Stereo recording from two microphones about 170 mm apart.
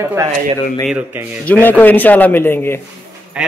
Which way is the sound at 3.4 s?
5° right (ahead or behind).